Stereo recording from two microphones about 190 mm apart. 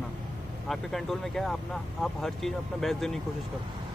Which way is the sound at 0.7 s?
Centre (ahead or behind).